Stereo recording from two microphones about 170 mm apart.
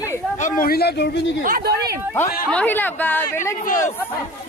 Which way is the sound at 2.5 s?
10° left (ahead or behind).